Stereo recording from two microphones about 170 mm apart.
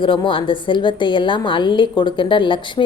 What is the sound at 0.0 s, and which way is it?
A woman's voice, 30° left (ahead or behind).